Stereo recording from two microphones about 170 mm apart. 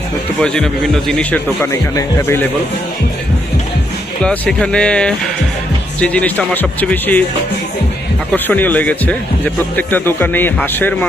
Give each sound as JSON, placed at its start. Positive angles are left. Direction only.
{"t": 0.3, "sound": "speech", "side_deg": 5}
{"t": 4.2, "sound": "speech", "side_deg": 5}
{"t": 8.3, "sound": "speech", "side_deg": 10}